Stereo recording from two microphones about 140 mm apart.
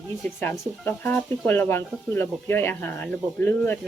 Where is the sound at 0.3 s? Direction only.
15° left (ahead or behind).